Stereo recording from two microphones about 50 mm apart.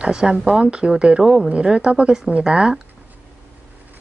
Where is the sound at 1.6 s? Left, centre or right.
Centre.